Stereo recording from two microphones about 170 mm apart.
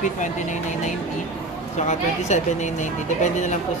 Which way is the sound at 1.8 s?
45° left (ahead or behind).